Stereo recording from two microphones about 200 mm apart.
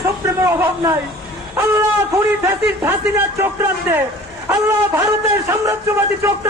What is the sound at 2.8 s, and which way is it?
A man's voice, 10° right (ahead or behind).